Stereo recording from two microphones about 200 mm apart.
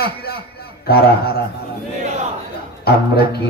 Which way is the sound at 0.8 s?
50° left (ahead or behind).